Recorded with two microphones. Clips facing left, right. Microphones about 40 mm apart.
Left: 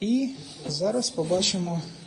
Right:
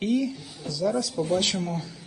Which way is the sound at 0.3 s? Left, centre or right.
Centre.